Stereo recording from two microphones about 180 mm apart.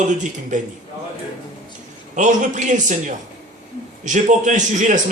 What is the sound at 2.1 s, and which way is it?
Speech, 45° right (ahead or behind).